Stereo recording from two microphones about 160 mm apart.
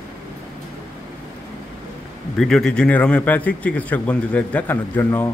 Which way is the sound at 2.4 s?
5° left (ahead or behind).